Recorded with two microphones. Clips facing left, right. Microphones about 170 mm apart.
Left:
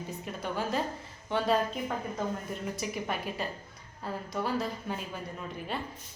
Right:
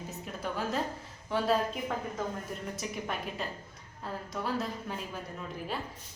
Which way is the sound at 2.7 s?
Centre (ahead or behind).